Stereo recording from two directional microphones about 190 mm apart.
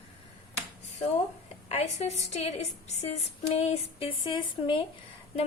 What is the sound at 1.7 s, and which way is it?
A woman's voice, 35° left (ahead or behind).